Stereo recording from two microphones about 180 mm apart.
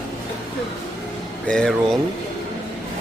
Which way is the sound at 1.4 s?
5° left (ahead or behind).